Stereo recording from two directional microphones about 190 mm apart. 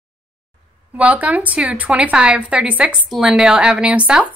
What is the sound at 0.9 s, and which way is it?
Speech, 10° right (ahead or behind).